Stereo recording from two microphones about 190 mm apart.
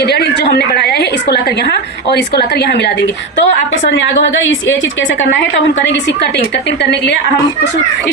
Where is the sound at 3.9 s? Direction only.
75° left (ahead or behind).